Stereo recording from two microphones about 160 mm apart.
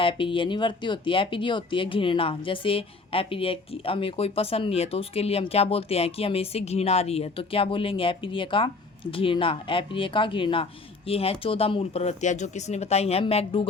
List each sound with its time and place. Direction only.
0.0 s speech: 35° left (ahead or behind)